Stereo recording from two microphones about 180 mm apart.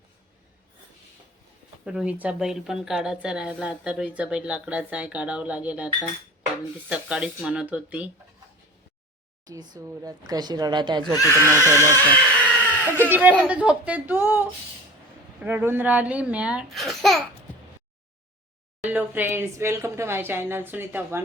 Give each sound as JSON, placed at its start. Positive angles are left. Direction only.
{"t": 1.8, "sound": "speech", "side_deg": -5}
{"t": 9.7, "sound": "a woman's voice", "side_deg": -20}
{"t": 11.1, "sound": "speech", "side_deg": 20}
{"t": 11.6, "sound": "speech", "side_deg": -15}
{"t": 11.9, "sound": "a sound", "side_deg": 10}
{"t": 13.1, "sound": "speech", "side_deg": -10}
{"t": 15.4, "sound": "speech", "side_deg": -10}
{"t": 18.9, "sound": "speech", "side_deg": -10}